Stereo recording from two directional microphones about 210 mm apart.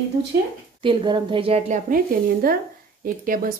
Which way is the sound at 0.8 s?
25° right (ahead or behind).